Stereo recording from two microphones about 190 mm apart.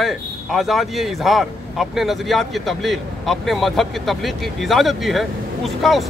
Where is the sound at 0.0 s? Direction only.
Centre (ahead or behind).